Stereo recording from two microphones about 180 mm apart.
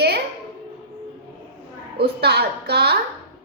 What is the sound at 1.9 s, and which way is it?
A woman's voice, 65° right (ahead or behind).